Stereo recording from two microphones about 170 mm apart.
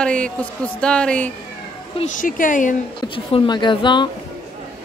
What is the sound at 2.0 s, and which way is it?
Speech, 50° left (ahead or behind).